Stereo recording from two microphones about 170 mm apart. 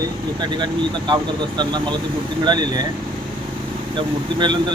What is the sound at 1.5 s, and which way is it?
Speech, 25° right (ahead or behind).